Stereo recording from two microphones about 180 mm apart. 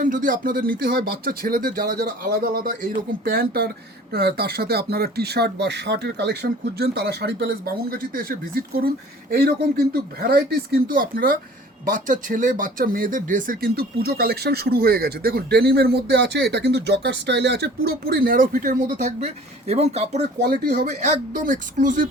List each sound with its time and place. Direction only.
0.0 s speech: 45° right (ahead or behind)
20.4 s speech: 55° right (ahead or behind)
21.0 s speech: 40° right (ahead or behind)